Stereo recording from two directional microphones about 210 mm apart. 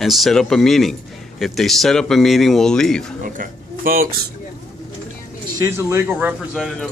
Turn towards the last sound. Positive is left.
turn(degrees=-5)  # may be behind; listen again after turning